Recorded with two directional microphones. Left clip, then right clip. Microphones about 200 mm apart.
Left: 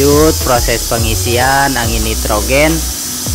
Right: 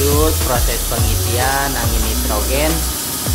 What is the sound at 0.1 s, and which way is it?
Snake, 30° left (ahead or behind).